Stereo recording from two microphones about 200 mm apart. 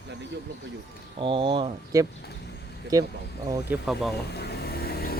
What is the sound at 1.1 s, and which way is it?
Speech, 25° right (ahead or behind).